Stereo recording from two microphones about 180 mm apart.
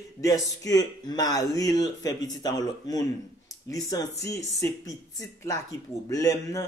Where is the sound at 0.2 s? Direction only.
20° left (ahead or behind).